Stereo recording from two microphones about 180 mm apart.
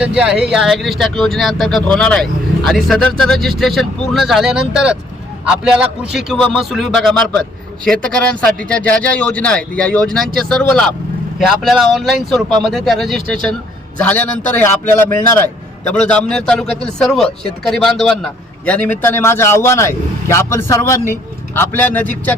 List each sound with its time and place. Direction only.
0.2 s a man's voice: 5° right (ahead or behind)